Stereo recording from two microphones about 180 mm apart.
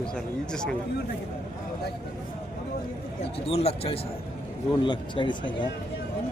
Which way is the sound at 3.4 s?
35° left (ahead or behind).